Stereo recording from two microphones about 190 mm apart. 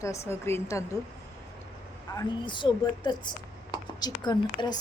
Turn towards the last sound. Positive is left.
turn(degrees=20)  # may be behind; listen again after turning